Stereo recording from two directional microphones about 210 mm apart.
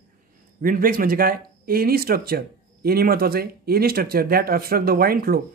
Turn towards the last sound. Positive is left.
turn(degrees=-45)  # may be behind; listen again after turning